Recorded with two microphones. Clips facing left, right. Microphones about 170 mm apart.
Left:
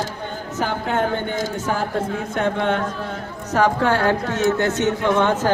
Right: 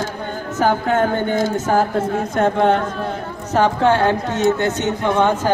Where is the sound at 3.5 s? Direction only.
25° right (ahead or behind).